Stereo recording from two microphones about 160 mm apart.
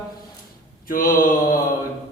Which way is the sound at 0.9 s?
60° left (ahead or behind).